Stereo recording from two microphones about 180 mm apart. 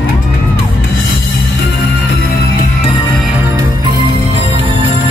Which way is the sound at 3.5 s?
25° right (ahead or behind).